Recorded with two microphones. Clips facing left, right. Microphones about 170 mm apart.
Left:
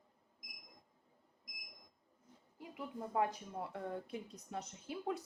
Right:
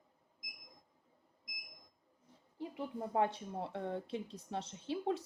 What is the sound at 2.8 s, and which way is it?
Speech, 30° right (ahead or behind).